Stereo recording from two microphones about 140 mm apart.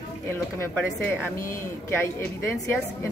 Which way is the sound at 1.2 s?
15° left (ahead or behind).